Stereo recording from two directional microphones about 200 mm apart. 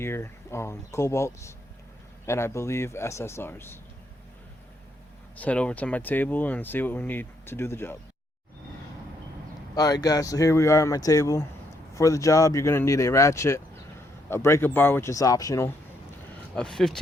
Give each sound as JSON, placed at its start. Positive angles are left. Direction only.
{"t": 0.0, "sound": "speech", "side_deg": 15}
{"t": 5.4, "sound": "speech", "side_deg": 5}
{"t": 9.7, "sound": "speech", "side_deg": 20}
{"t": 16.6, "sound": "speech", "side_deg": 5}